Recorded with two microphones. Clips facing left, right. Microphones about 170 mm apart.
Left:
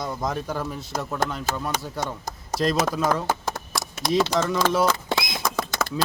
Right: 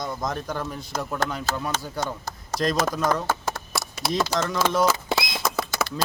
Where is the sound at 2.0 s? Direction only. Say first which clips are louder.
Even; centre (ahead or behind).